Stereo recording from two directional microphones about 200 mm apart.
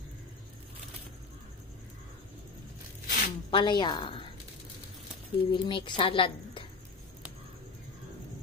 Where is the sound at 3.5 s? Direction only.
25° left (ahead or behind).